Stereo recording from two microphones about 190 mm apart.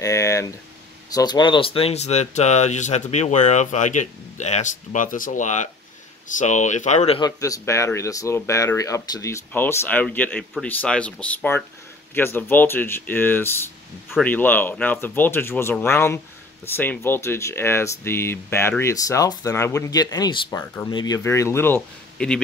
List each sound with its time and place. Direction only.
0.0 s a sound: 15° left (ahead or behind)
1.1 s speech: 20° left (ahead or behind)
7.2 s speech: 20° left (ahead or behind)